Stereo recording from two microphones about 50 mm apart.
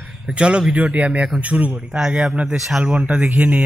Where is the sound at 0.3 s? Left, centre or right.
Right.